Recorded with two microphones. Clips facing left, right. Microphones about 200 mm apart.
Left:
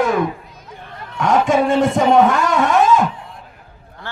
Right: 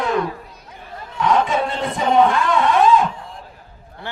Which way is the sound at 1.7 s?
45° left (ahead or behind).